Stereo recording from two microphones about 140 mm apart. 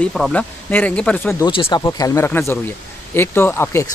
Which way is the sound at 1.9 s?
25° left (ahead or behind).